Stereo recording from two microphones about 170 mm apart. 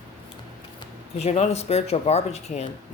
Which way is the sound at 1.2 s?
40° left (ahead or behind).